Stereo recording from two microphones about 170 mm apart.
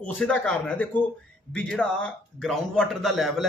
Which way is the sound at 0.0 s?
5° left (ahead or behind).